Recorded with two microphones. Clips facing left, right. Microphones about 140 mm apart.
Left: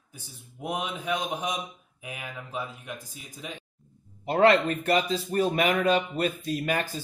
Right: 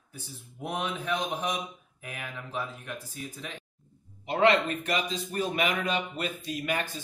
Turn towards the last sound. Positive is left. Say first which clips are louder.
# left 3 dB
turn(degrees=35)  # may be behind; listen again after turning